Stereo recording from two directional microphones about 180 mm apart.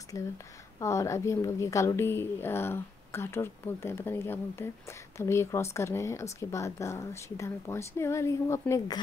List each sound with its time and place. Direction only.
0.1 s a woman's voice: 20° left (ahead or behind)